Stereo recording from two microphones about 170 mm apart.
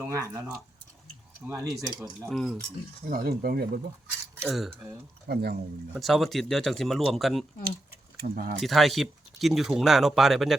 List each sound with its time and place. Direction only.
0.0 s speech: 15° right (ahead or behind)
1.5 s speech: 15° right (ahead or behind)
2.3 s speech: centre (ahead or behind)
3.1 s cutlery: 60° right (ahead or behind)
4.4 s speech: centre (ahead or behind)
5.3 s speech: 70° right (ahead or behind)
5.9 s speech: centre (ahead or behind)
8.1 s speech: 60° right (ahead or behind)
8.6 s speech: centre (ahead or behind)